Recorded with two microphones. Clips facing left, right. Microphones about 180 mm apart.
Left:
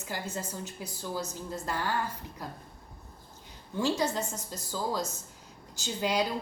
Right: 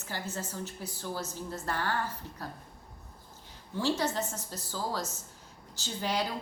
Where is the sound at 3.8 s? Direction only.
15° left (ahead or behind).